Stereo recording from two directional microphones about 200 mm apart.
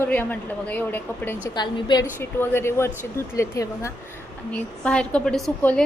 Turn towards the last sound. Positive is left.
turn(degrees=5)  # may be behind; listen again after turning